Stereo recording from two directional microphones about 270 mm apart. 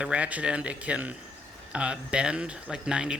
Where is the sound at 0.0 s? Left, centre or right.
Centre.